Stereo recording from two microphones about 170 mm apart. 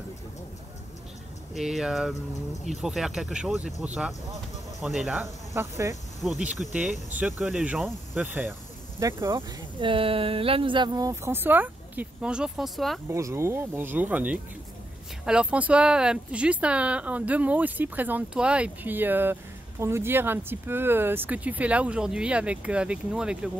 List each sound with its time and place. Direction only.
1.5 s speech: centre (ahead or behind)
5.2 s speech: 15° right (ahead or behind)
6.2 s speech: 5° right (ahead or behind)
9.0 s speech: 25° right (ahead or behind); by 13.0 s centre (ahead or behind)
13.1 s speech: 15° right (ahead or behind)